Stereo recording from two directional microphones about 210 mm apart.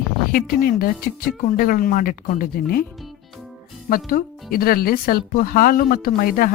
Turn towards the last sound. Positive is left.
turn(degrees=45)  # may be behind; listen again after turning